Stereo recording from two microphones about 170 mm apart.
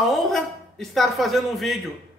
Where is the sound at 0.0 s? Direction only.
Centre (ahead or behind).